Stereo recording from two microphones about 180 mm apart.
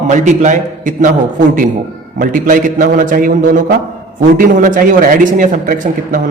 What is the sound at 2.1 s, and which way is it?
Speech, 50° right (ahead or behind).